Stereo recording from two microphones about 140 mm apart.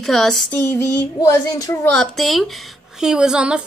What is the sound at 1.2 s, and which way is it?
Speech, 25° left (ahead or behind).